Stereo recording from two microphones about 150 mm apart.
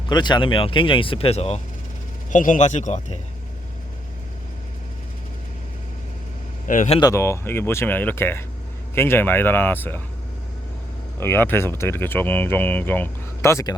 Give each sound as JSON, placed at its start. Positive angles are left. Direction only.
{"t": 0.1, "sound": "speech", "side_deg": 30}
{"t": 2.3, "sound": "speech", "side_deg": 60}
{"t": 6.7, "sound": "speech", "side_deg": 60}
{"t": 7.0, "sound": "speech", "side_deg": 20}
{"t": 11.2, "sound": "speech", "side_deg": 15}